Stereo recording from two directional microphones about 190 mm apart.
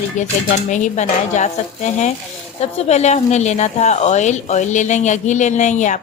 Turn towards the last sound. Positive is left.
turn(degrees=40)  # may be behind; listen again after turning